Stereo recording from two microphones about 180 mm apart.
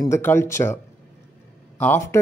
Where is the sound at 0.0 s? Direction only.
15° left (ahead or behind).